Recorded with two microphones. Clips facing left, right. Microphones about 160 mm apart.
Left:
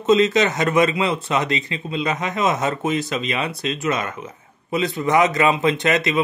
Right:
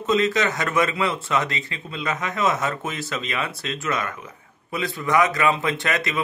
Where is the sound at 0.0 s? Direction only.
20° left (ahead or behind).